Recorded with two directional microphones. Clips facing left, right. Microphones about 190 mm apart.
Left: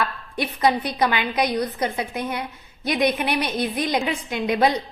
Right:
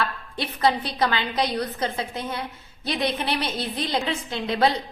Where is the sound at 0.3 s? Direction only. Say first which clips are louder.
Left 2 dB; 15° left (ahead or behind).